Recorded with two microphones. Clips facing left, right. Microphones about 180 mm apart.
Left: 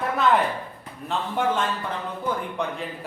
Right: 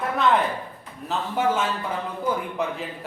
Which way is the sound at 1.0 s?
5° right (ahead or behind).